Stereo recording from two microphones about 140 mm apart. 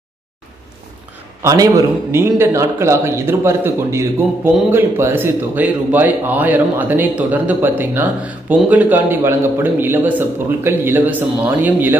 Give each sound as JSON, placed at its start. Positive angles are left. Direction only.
{"t": 1.4, "sound": "a man's voice", "side_deg": -25}